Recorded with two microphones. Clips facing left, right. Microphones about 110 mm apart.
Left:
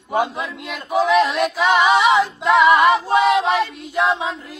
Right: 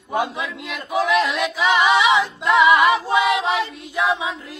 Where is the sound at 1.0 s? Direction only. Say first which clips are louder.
Left 3 dB; 35° left (ahead or behind).